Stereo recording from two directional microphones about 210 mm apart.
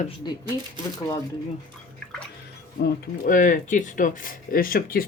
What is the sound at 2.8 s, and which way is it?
Speech, 40° left (ahead or behind).